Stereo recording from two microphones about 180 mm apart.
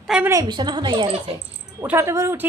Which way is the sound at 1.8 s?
15° right (ahead or behind).